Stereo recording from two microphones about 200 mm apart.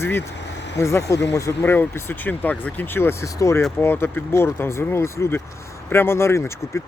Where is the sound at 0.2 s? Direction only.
60° left (ahead or behind).